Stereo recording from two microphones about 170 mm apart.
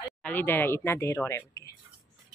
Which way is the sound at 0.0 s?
10° left (ahead or behind).